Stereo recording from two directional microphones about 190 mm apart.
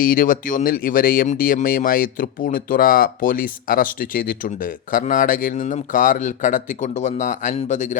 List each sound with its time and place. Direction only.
0.0 s speech: 45° left (ahead or behind)